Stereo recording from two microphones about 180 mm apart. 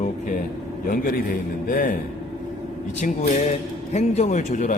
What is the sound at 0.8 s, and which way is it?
Speech, 50° left (ahead or behind).